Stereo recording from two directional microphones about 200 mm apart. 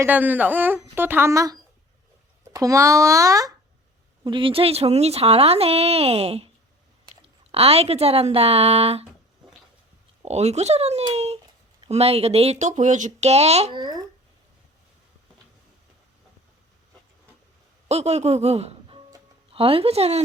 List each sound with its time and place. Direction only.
0.0 s a woman's voice: 10° right (ahead or behind); by 6.5 s 30° right (ahead or behind)
7.5 s speech: 30° right (ahead or behind)
10.2 s speech: 35° right (ahead or behind)
17.8 s speech: 30° right (ahead or behind)